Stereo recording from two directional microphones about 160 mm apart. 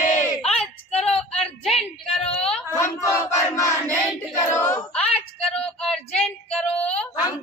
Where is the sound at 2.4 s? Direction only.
5° left (ahead or behind).